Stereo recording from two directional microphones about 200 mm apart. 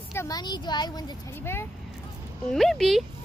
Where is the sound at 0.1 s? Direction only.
15° left (ahead or behind).